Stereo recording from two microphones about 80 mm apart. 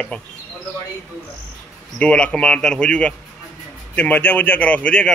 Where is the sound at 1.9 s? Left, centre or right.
Centre.